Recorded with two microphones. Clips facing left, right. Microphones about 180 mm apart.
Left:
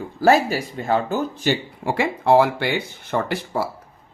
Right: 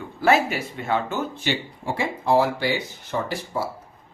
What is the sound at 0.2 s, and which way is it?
Speech, 40° left (ahead or behind).